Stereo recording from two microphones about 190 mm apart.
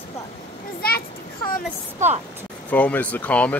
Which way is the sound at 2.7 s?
10° left (ahead or behind).